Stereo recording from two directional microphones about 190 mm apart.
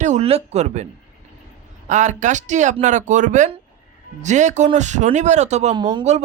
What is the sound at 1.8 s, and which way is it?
Speech, 40° right (ahead or behind).